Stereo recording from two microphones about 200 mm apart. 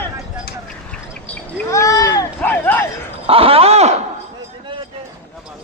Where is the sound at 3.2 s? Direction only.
30° right (ahead or behind).